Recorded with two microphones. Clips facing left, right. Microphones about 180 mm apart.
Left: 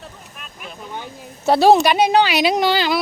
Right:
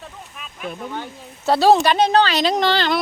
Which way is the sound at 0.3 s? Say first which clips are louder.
Right 8 dB; centre (ahead or behind).